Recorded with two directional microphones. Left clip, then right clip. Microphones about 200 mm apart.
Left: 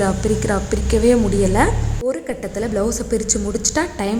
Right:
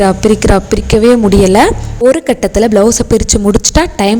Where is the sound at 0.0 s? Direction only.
35° right (ahead or behind).